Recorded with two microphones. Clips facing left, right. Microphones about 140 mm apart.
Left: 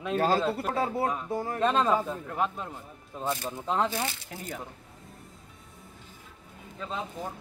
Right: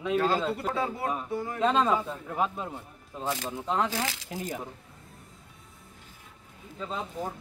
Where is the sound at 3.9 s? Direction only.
90° right.